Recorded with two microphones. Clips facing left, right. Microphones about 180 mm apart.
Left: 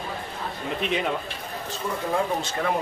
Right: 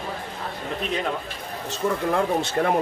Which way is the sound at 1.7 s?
60° right (ahead or behind).